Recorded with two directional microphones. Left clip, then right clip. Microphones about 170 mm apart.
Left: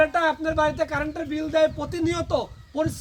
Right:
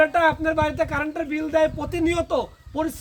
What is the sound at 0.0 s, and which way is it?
Speech, 20° right (ahead or behind).